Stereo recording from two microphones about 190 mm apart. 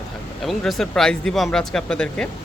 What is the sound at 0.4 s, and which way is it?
A man's voice, centre (ahead or behind).